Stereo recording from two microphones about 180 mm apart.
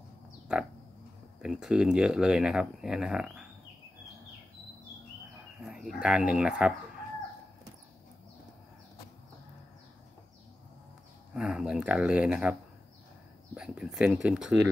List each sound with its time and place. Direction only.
0.5 s speech: 5° right (ahead or behind)
5.6 s speech: 5° right (ahead or behind)
11.3 s speech: 5° right (ahead or behind)
13.6 s speech: 5° right (ahead or behind)